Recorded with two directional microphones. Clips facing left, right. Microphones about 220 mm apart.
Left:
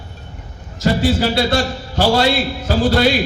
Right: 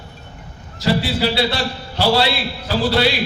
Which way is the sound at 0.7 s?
45° left (ahead or behind).